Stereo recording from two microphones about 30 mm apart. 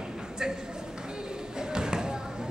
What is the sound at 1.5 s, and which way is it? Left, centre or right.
Basketball bounce, right.